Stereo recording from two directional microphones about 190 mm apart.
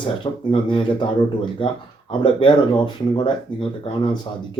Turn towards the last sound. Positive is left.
turn(degrees=25)  # may be behind; listen again after turning